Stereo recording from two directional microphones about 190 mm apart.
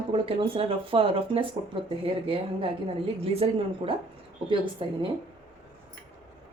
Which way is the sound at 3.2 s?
30° right (ahead or behind).